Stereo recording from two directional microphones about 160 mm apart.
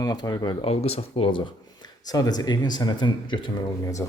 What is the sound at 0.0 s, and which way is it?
Speech, 25° left (ahead or behind).